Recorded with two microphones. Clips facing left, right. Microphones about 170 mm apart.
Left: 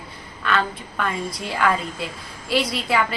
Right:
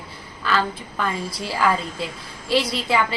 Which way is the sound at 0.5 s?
Centre (ahead or behind).